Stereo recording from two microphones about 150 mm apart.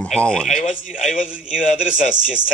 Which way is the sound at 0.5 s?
55° left (ahead or behind).